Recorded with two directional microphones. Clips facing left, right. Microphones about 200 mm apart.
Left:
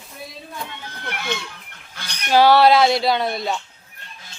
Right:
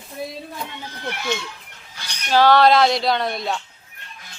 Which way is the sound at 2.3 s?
10° left (ahead or behind).